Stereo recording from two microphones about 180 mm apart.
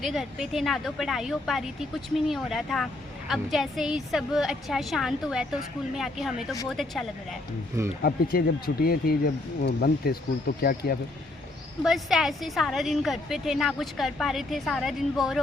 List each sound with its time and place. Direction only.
0.0 s speech: centre (ahead or behind)
8.0 s speech: 60° left (ahead or behind)
11.8 s speech: centre (ahead or behind)